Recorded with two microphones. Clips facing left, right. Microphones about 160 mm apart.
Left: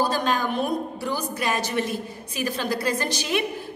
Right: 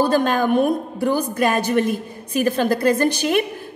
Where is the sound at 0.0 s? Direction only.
55° right (ahead or behind).